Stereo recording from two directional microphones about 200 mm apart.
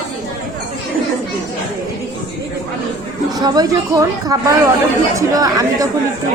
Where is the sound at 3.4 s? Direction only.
20° right (ahead or behind).